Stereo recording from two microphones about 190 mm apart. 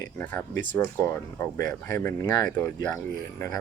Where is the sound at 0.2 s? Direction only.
10° left (ahead or behind).